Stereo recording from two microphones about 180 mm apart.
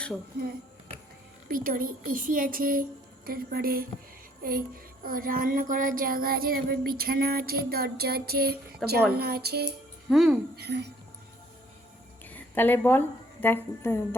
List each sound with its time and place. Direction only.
1.5 s a woman's voice: 50° right (ahead or behind)
3.2 s a sound: 55° right (ahead or behind)
10.1 s speech: centre (ahead or behind)
10.5 s a woman's voice: 65° right (ahead or behind)
12.2 s a woman's voice: 10° left (ahead or behind)